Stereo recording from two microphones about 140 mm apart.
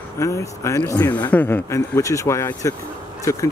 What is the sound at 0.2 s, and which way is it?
Speech, 20° left (ahead or behind).